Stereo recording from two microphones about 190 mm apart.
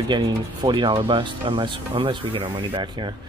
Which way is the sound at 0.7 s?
25° right (ahead or behind).